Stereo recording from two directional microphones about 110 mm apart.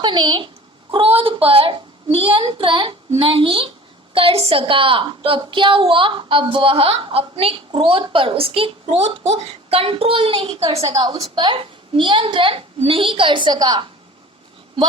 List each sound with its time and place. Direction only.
0.0 s a woman's voice: 45° right (ahead or behind)
11.2 s a woman's voice: 45° right (ahead or behind)